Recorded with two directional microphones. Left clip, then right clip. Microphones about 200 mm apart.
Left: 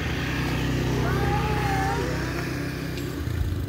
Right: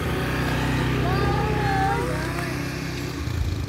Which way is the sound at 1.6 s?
25° left (ahead or behind).